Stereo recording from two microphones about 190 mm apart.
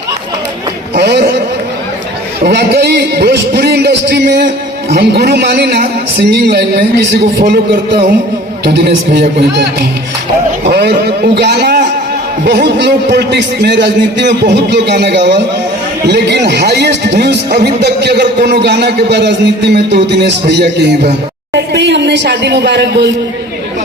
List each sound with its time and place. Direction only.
0.9 s a sound: 60° right (ahead or behind)
2.4 s a man's voice: 60° right (ahead or behind)
10.7 s a man's voice: 60° right (ahead or behind)